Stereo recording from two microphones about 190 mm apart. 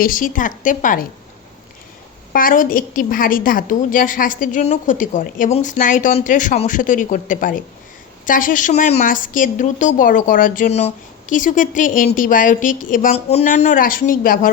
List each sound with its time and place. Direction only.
0.0 s a woman's voice: 45° left (ahead or behind)
2.3 s a woman's voice: 45° left (ahead or behind)